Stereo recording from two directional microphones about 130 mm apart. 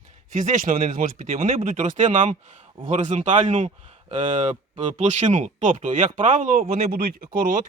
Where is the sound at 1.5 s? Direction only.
55° right (ahead or behind).